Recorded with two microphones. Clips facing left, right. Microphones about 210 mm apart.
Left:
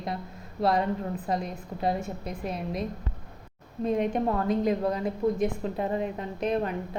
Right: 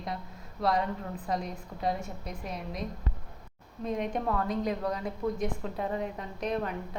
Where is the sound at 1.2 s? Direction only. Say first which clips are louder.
Left 3 dB; 25° left (ahead or behind).